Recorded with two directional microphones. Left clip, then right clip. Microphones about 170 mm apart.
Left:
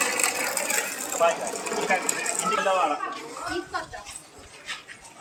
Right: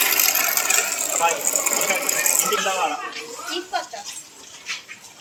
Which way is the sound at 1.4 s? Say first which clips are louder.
Right 5 dB; 60° left (ahead or behind).